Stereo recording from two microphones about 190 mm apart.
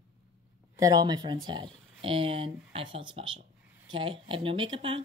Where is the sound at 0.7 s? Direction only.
20° right (ahead or behind).